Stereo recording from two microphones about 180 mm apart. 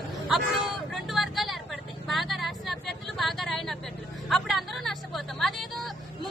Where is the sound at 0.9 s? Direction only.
Centre (ahead or behind).